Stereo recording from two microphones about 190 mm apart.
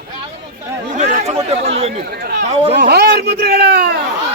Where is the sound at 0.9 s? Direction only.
40° right (ahead or behind).